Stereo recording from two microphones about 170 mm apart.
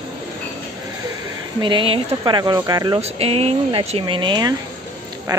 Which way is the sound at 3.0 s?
35° right (ahead or behind).